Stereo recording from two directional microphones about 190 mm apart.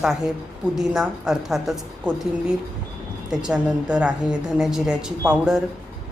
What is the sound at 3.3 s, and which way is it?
Speech, 5° right (ahead or behind).